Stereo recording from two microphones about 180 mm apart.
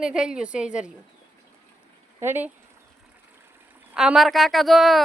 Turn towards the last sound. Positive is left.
turn(degrees=0)  # may be behind; listen again after turning